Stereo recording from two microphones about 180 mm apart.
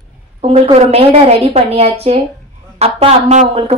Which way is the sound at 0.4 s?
35° right (ahead or behind).